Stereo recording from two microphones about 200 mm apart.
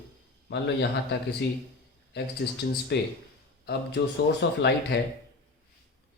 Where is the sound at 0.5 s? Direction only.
60° left (ahead or behind).